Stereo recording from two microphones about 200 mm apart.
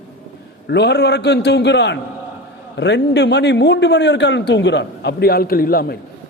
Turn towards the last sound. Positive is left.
turn(degrees=45)  # may be behind; listen again after turning